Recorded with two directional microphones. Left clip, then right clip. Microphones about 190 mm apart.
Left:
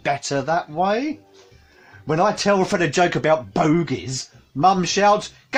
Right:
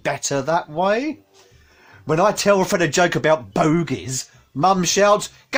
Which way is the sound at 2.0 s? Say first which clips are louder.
Right 2 dB; 40° right (ahead or behind).